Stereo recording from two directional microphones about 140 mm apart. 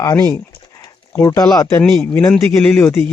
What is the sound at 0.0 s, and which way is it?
Speech, 25° left (ahead or behind).